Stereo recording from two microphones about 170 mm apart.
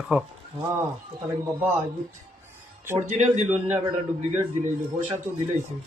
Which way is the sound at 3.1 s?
45° right (ahead or behind).